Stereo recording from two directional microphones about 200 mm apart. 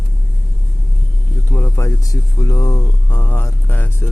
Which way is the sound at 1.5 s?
15° left (ahead or behind).